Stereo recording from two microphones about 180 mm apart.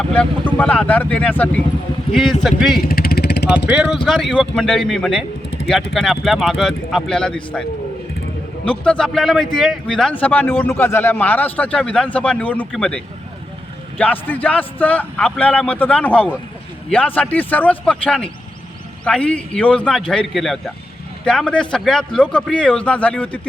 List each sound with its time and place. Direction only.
0.1 s a man's voice: 5° left (ahead or behind)
2.8 s vehicle: 55° left (ahead or behind)
3.6 s speech: 75° left (ahead or behind)
4.0 s a man's voice: centre (ahead or behind)
8.6 s a man's voice: 5° left (ahead or behind)
14.0 s a man's voice: 10° left (ahead or behind)